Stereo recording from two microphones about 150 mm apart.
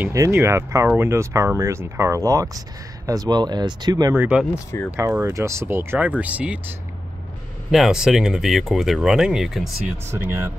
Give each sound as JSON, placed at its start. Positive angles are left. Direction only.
{"t": 0.0, "sound": "speech", "side_deg": -15}
{"t": 4.1, "sound": "speech", "side_deg": -10}
{"t": 7.7, "sound": "speech", "side_deg": 0}
{"t": 10.1, "sound": "speech", "side_deg": -15}